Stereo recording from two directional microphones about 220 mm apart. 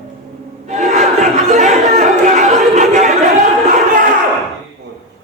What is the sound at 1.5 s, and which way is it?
Chatter, 30° right (ahead or behind).